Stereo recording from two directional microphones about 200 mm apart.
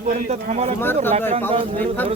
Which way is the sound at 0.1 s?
35° right (ahead or behind).